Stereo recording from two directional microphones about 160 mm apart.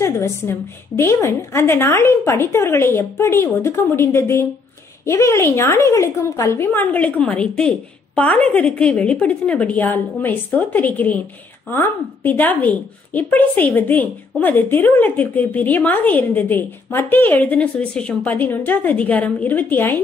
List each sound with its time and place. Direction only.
0.0 s a woman's voice: 15° left (ahead or behind)